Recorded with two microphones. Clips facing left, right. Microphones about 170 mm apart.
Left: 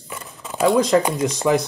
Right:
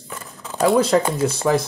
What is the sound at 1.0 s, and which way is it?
Speech, 15° left (ahead or behind).